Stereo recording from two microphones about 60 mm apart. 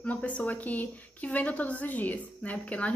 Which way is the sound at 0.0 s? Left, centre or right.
Left.